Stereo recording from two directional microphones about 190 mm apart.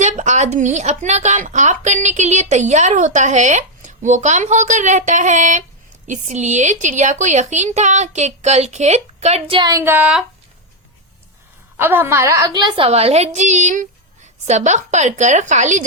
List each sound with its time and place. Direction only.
0.0 s a woman's voice: 40° right (ahead or behind); by 10.2 s 5° right (ahead or behind)
11.8 s a woman's voice: 10° right (ahead or behind); by 15.8 s 40° right (ahead or behind)